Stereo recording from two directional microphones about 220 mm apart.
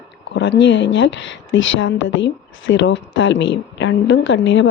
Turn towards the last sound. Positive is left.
turn(degrees=55)  # may be behind; listen again after turning